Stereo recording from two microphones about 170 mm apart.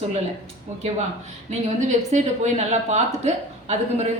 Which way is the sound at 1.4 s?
45° right (ahead or behind).